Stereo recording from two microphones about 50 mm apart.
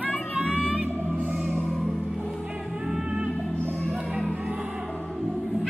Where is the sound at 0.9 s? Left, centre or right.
Right.